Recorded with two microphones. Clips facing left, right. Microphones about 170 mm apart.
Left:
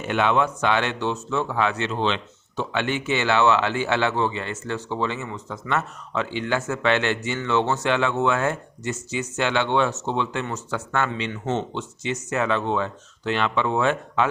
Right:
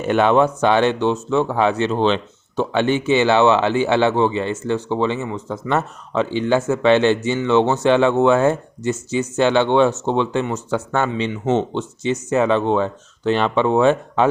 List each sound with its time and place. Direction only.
0.0 s speech: 40° right (ahead or behind)